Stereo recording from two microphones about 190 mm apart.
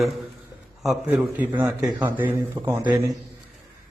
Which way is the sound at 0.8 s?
Centre (ahead or behind).